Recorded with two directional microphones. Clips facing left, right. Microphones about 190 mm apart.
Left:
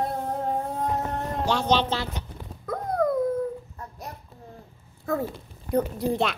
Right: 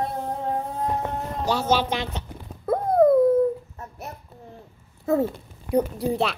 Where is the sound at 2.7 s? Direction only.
25° right (ahead or behind).